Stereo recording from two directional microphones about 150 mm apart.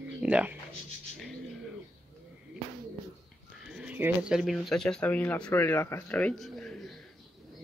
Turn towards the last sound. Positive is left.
turn(degrees=5)  # may be behind; listen again after turning